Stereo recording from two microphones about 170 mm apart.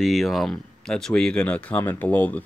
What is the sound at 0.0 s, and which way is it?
Speech, centre (ahead or behind).